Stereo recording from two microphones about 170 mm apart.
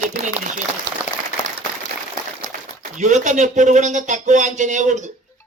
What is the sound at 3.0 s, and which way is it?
Speech, 45° right (ahead or behind).